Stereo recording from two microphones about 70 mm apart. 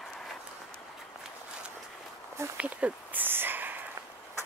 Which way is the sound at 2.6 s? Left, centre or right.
Right.